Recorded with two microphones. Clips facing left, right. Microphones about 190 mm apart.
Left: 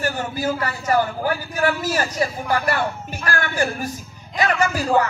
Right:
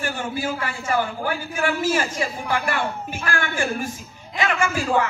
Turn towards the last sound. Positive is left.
turn(degrees=40)  # may be behind; listen again after turning